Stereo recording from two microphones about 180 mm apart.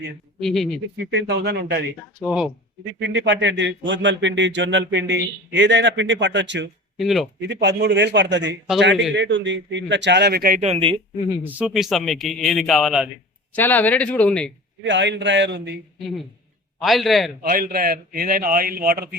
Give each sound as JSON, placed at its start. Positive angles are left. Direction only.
{"t": 0.3, "sound": "a man's voice", "side_deg": 0}
{"t": 1.1, "sound": "a man's voice", "side_deg": -75}
{"t": 2.2, "sound": "a man's voice", "side_deg": -5}
{"t": 3.0, "sound": "a sound", "side_deg": -85}
{"t": 6.9, "sound": "a man's voice", "side_deg": 0}
{"t": 7.4, "sound": "a man's voice", "side_deg": -75}
{"t": 10.6, "sound": "speech", "side_deg": -35}
{"t": 11.4, "sound": "a man's voice", "side_deg": -5}
{"t": 13.5, "sound": "speech", "side_deg": 10}
{"t": 14.8, "sound": "a sound", "side_deg": -80}
{"t": 16.8, "sound": "a man's voice", "side_deg": 0}
{"t": 17.5, "sound": "a man's voice", "side_deg": -55}